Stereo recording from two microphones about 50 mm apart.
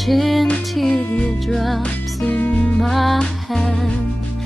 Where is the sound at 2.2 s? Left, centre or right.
Left.